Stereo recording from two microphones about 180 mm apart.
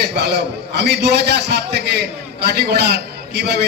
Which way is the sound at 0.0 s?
65° right (ahead or behind).